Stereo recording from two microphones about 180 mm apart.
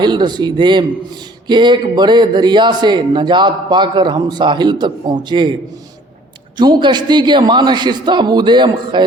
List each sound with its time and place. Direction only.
0.0 s a man's voice: 25° right (ahead or behind)
6.6 s a man's voice: 25° right (ahead or behind)